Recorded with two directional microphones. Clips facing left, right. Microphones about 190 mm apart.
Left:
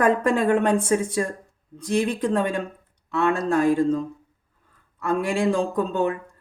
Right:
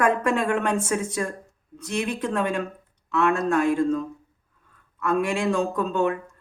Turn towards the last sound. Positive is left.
turn(degrees=30)  # may be behind; listen again after turning